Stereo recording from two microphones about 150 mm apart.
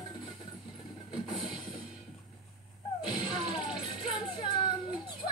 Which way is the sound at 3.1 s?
30° left (ahead or behind).